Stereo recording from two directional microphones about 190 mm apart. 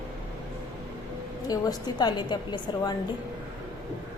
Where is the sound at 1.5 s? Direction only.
20° left (ahead or behind).